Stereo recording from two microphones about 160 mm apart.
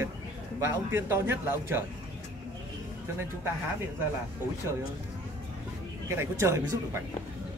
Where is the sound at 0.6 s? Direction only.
15° right (ahead or behind).